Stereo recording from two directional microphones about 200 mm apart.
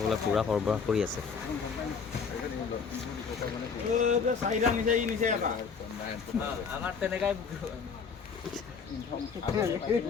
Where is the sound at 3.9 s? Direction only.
35° right (ahead or behind).